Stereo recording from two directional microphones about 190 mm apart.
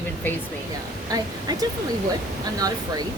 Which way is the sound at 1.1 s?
20° right (ahead or behind).